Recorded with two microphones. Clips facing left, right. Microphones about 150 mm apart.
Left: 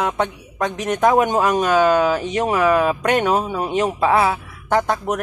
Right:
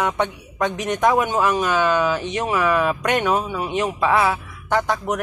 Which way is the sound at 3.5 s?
45° left (ahead or behind).